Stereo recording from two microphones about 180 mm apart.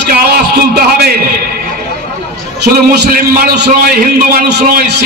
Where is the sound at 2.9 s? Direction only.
60° right (ahead or behind).